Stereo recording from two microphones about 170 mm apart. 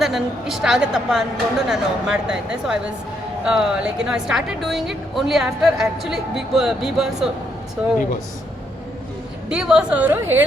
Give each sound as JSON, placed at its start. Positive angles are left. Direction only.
{"t": 0.0, "sound": "a woman's voice", "side_deg": 0}
{"t": 9.5, "sound": "a woman's voice", "side_deg": -5}